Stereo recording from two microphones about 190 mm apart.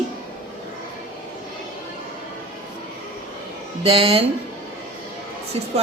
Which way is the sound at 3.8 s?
30° right (ahead or behind).